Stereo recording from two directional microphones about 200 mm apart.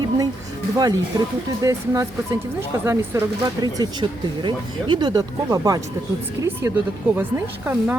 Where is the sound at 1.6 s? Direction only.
15° right (ahead or behind).